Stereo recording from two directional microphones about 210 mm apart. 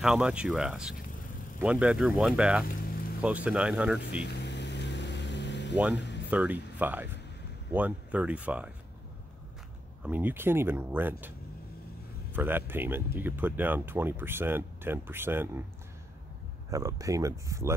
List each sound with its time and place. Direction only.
0.0 s speech: 5° right (ahead or behind)
2.7 s vehicle: 45° left (ahead or behind)
3.2 s speech: 5° right (ahead or behind)
4.3 s vehicle: 55° left (ahead or behind)
5.9 s music: 55° left (ahead or behind)
6.3 s speech: 5° right (ahead or behind)
10.0 s speech: 10° right (ahead or behind)
16.7 s speech: 15° right (ahead or behind)